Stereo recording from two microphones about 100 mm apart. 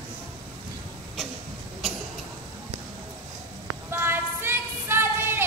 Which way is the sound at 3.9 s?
20° right (ahead or behind).